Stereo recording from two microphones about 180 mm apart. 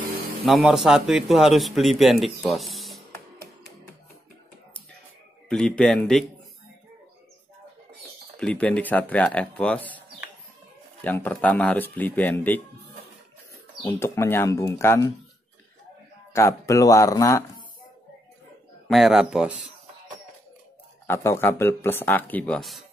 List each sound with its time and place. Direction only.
0.5 s speech: centre (ahead or behind)
5.5 s speech: 5° left (ahead or behind)
8.4 s speech: 5° left (ahead or behind)
13.8 s speech: 15° left (ahead or behind)
16.3 s speech: 15° left (ahead or behind)
18.9 s speech: centre (ahead or behind)
21.1 s speech: 15° left (ahead or behind)